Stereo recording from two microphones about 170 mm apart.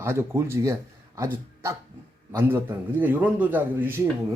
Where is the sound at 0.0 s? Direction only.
15° right (ahead or behind).